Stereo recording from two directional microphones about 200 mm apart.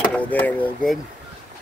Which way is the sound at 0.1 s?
5° left (ahead or behind).